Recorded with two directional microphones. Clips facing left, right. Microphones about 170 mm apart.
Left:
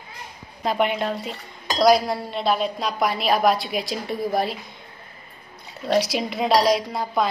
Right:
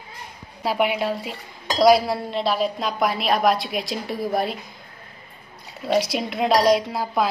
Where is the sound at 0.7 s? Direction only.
5° right (ahead or behind).